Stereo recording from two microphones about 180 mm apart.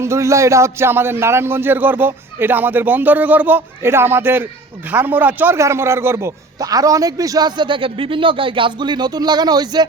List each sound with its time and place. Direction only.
0.0 s a man's voice: 15° right (ahead or behind)